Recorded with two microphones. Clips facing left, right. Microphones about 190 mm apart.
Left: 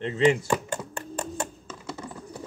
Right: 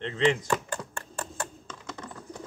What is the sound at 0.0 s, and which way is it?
Speech, 10° left (ahead or behind).